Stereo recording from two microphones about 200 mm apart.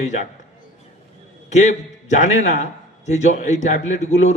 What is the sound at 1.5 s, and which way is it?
A man's voice, 35° left (ahead or behind).